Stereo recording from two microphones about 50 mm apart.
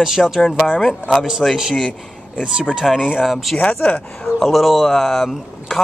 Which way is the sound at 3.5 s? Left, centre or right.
Left.